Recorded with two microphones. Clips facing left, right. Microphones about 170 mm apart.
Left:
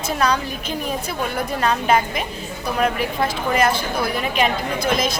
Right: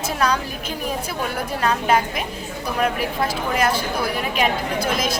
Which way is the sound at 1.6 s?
5° right (ahead or behind).